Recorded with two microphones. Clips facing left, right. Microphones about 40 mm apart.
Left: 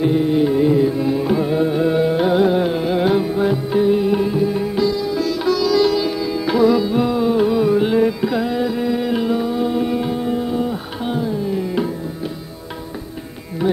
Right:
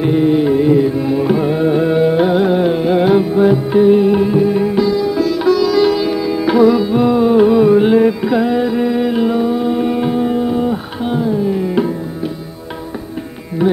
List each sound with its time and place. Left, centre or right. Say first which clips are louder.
0.0 s music: right 3 dB; right